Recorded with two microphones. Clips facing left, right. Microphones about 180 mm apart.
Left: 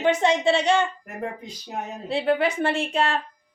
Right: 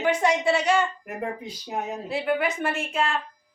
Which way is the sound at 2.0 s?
30° left (ahead or behind).